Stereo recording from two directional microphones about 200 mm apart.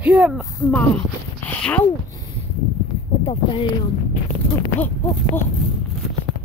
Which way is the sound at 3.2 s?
30° left (ahead or behind).